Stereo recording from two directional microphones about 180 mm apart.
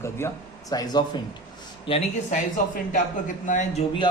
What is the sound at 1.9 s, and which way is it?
Speech, 35° left (ahead or behind).